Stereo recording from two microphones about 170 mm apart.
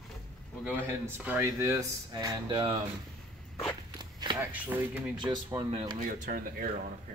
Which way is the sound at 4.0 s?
25° right (ahead or behind).